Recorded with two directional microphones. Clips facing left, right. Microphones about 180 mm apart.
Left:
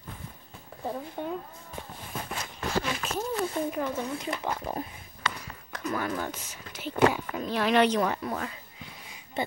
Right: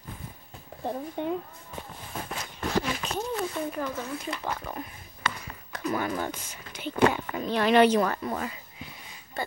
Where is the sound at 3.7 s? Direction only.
10° left (ahead or behind).